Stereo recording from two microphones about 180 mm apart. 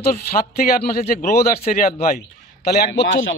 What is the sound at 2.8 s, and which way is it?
Speech, 85° left.